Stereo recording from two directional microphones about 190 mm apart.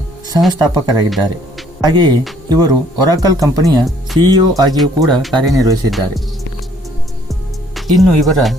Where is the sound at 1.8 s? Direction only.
20° right (ahead or behind).